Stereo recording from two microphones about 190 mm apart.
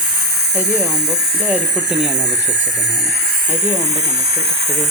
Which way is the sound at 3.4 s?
40° right (ahead or behind).